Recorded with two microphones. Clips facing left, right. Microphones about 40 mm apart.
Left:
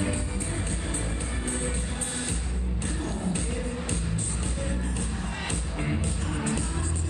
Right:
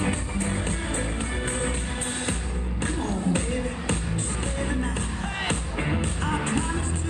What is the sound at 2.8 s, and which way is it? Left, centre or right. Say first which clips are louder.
Music: right 5 dB; right.